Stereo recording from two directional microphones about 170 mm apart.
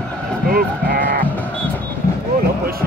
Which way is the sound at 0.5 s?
55° right (ahead or behind).